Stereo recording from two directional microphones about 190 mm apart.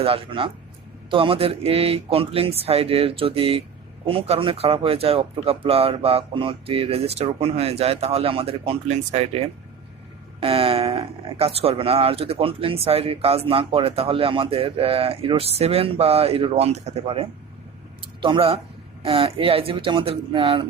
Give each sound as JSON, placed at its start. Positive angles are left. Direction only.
{"t": 0.0, "sound": "speech", "side_deg": -30}